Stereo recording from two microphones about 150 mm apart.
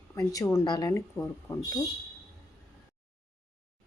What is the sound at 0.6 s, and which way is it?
A woman's voice, 25° left (ahead or behind).